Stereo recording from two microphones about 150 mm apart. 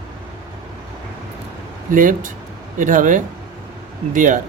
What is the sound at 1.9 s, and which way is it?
Speech, 65° right (ahead or behind).